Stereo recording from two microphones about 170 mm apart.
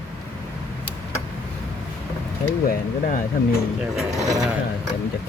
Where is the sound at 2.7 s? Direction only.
50° left (ahead or behind).